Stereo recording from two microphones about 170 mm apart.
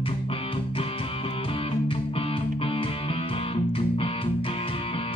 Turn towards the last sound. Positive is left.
turn(degrees=30)  # may be behind; listen again after turning